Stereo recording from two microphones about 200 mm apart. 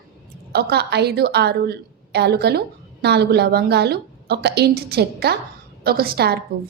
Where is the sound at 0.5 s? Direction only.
55° right (ahead or behind).